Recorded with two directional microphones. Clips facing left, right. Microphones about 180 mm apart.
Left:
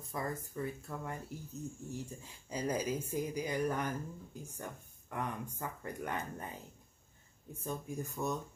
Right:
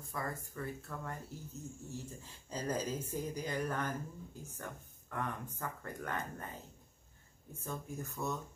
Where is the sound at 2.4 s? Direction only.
10° left (ahead or behind).